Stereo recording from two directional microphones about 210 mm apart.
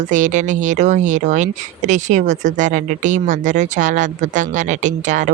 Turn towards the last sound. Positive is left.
turn(degrees=-35)  # may be behind; listen again after turning